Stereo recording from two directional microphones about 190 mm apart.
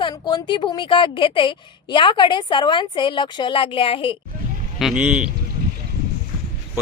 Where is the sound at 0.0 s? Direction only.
25° left (ahead or behind).